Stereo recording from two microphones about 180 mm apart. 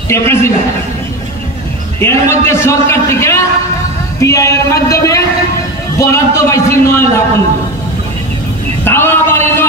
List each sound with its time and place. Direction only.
0.1 s a man's voice: 15° left (ahead or behind)
2.0 s a man's voice: 15° left (ahead or behind)
8.8 s a sound: 15° left (ahead or behind)